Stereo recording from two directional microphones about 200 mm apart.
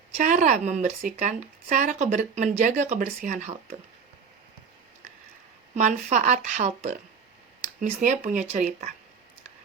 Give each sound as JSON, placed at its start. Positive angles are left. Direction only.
{"t": 0.2, "sound": "speech", "side_deg": -40}
{"t": 5.7, "sound": "speech", "side_deg": -35}